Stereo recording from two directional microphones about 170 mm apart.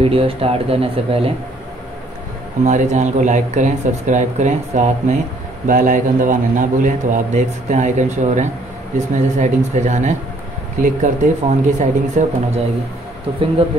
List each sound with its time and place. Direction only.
0.0 s speech: 35° right (ahead or behind)
2.6 s a man's voice: 45° right (ahead or behind)